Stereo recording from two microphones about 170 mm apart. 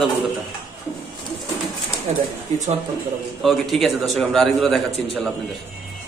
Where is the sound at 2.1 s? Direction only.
45° right (ahead or behind).